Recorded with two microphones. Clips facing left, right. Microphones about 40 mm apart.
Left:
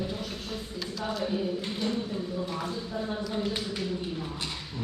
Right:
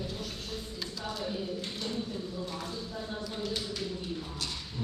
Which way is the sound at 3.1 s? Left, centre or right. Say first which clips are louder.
Left 5 dB; left.